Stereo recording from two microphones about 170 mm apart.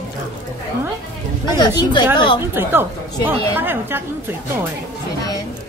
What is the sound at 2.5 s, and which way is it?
A woman's voice, 15° right (ahead or behind).